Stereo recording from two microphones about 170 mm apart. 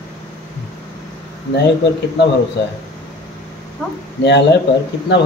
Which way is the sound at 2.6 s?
90° left.